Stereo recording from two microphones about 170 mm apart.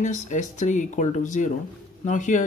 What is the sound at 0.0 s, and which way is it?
Speech, 45° left (ahead or behind).